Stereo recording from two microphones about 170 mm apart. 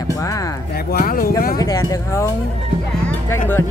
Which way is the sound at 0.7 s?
60° left (ahead or behind).